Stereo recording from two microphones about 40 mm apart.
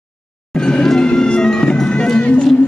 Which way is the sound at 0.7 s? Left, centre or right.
Centre.